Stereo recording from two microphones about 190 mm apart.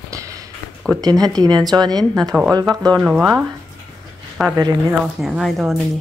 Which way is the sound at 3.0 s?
5° right (ahead or behind).